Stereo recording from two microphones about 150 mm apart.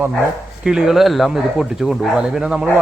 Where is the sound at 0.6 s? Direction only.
5° right (ahead or behind).